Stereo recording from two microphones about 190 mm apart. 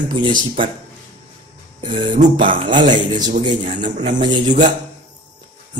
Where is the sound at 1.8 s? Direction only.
25° right (ahead or behind).